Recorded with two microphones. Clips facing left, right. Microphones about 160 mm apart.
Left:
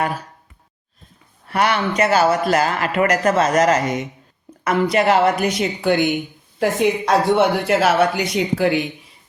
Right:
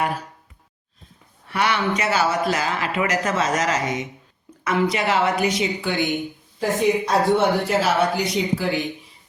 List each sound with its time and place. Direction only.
1.5 s a woman's voice: 50° left (ahead or behind)
6.6 s speech: 75° left (ahead or behind)